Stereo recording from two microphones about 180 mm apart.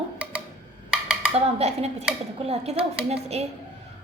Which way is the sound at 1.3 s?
35° right (ahead or behind).